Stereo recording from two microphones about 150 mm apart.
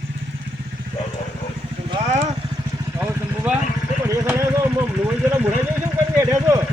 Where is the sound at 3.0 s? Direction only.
15° right (ahead or behind).